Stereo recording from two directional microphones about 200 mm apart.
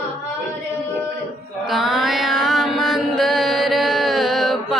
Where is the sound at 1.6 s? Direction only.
Centre (ahead or behind).